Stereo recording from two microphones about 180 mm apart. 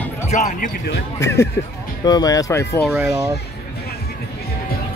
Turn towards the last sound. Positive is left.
turn(degrees=-15)  # may be behind; listen again after turning